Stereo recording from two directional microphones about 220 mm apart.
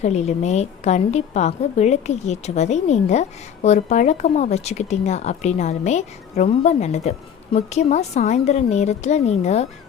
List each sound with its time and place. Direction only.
0.0 s a woman's voice: 30° left (ahead or behind)